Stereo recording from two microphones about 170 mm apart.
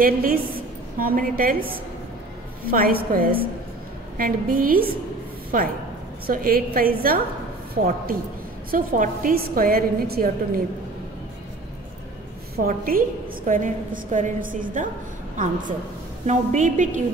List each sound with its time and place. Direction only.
0.0 s a woman's voice: 60° right (ahead or behind)
2.7 s a woman's voice: 60° right (ahead or behind)
12.6 s a woman's voice: 60° right (ahead or behind)